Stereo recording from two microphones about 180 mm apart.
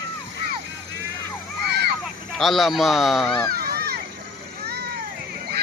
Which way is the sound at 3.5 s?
55° right (ahead or behind).